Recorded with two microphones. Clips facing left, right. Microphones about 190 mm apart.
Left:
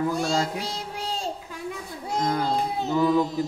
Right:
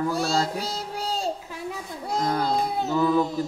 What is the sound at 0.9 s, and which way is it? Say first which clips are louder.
Child singing: right 4 dB; centre (ahead or behind).